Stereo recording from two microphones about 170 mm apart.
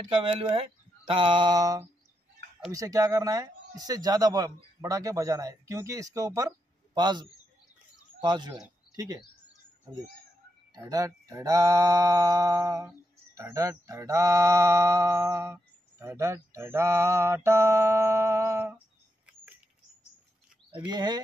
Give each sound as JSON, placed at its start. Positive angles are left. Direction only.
{"t": 0.1, "sound": "speech", "side_deg": -30}
{"t": 10.7, "sound": "speech", "side_deg": -20}
{"t": 20.8, "sound": "speech", "side_deg": -25}